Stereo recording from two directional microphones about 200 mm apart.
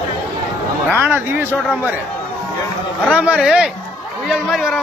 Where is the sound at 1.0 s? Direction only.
10° right (ahead or behind).